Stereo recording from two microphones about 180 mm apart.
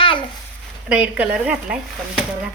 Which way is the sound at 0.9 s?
5° right (ahead or behind).